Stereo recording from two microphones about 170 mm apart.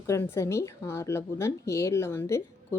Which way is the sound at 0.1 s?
15° left (ahead or behind).